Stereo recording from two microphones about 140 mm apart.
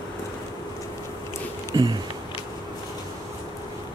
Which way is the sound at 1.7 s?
30° right (ahead or behind).